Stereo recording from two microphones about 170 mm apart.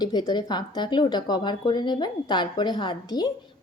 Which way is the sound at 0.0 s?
25° left (ahead or behind).